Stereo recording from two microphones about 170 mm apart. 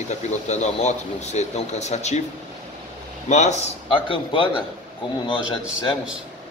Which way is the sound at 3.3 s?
40° left (ahead or behind).